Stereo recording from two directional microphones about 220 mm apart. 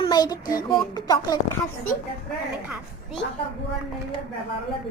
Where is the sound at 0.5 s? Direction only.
20° left (ahead or behind).